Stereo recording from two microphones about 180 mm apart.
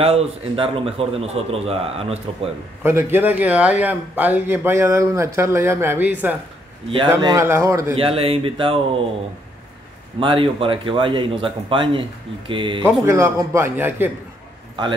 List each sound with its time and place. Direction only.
0.0 s a man's voice: 30° right (ahead or behind)
2.8 s a man's voice: 15° right (ahead or behind)
7.9 s a man's voice: 30° right (ahead or behind)
10.2 s speech: 30° right (ahead or behind)
12.8 s a man's voice: 15° right (ahead or behind)